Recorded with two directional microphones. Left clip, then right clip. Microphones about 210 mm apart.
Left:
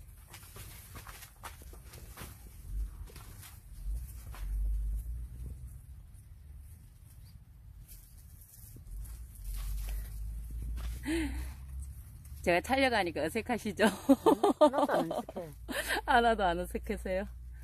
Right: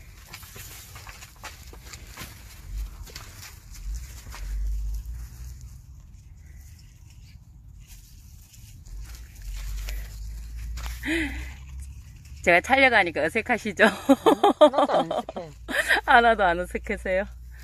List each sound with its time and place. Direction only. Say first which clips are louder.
11.0 s gasp: right 8 dB; 5° left (ahead or behind)
12.4 s speech: right 10 dB; 5° left (ahead or behind)